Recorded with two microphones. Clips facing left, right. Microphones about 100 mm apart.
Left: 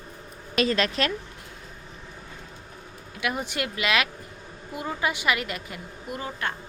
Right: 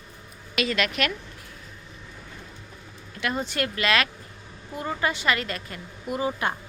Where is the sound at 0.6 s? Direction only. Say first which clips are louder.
Left 2 dB; 35° left (ahead or behind).